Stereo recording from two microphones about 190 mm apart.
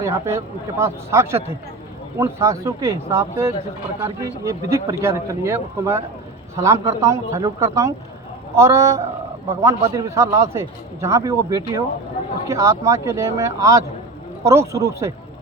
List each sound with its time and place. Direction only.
0.0 s speech: 15° right (ahead or behind)